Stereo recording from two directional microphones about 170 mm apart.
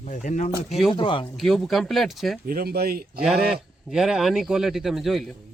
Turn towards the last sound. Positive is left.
turn(degrees=0)  # may be behind; listen again after turning